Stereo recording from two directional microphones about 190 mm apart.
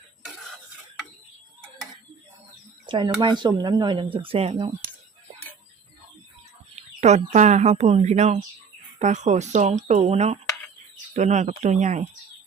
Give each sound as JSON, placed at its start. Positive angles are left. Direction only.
{"t": 2.8, "sound": "speech", "side_deg": -25}
{"t": 6.7, "sound": "speech", "side_deg": -35}